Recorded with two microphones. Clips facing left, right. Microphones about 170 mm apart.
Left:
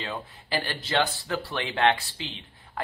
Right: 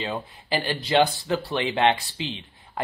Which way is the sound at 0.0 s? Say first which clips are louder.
Right 4 dB; 20° right (ahead or behind).